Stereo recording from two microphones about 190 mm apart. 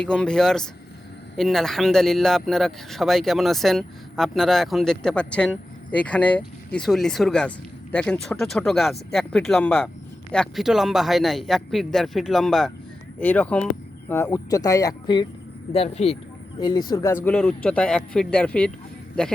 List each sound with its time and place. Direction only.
0.0 s speech: 5° left (ahead or behind); by 16.0 s 30° left (ahead or behind)
16.6 s speech: 20° left (ahead or behind)
17.2 s speech: 5° left (ahead or behind)